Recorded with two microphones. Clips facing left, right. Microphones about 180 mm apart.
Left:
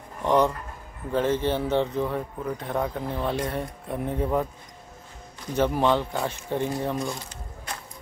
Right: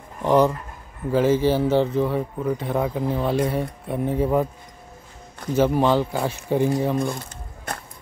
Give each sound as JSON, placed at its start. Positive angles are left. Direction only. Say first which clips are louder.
{"t": 0.2, "sound": "speech", "louder": "right 4 dB", "side_deg": -5}
{"t": 5.6, "sound": "speech", "louder": "right 4 dB", "side_deg": -5}
{"t": 7.0, "sound": "a sound", "louder": "right 5 dB", "side_deg": -55}